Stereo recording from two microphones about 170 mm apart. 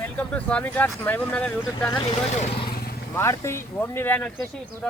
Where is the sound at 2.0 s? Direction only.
35° left (ahead or behind).